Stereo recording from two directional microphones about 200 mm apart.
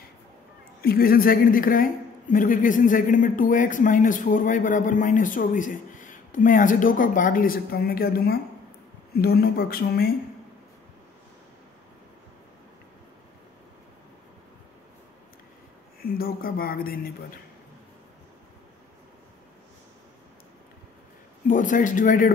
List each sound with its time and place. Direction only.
0.8 s a woman's voice: 50° left (ahead or behind)
16.0 s speech: 50° left (ahead or behind)
21.5 s a woman's voice: 40° left (ahead or behind)